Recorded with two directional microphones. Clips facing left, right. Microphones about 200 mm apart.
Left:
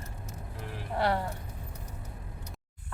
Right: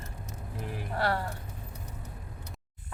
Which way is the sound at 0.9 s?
20° left (ahead or behind).